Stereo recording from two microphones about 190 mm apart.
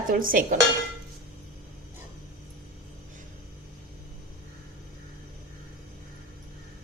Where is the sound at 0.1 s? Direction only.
50° right (ahead or behind).